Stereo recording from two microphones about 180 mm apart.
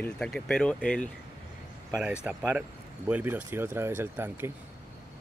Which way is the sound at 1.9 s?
5° right (ahead or behind).